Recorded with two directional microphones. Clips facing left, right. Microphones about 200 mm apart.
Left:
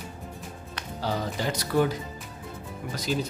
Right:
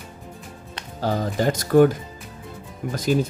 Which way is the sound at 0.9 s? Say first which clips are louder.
Right 6 dB; 50° right (ahead or behind).